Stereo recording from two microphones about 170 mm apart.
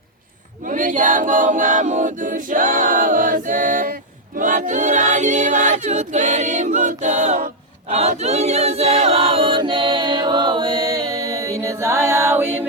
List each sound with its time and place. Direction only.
0.6 s a capella: 50° right (ahead or behind)
4.4 s choir: 50° right (ahead or behind); by 12.6 s 15° right (ahead or behind)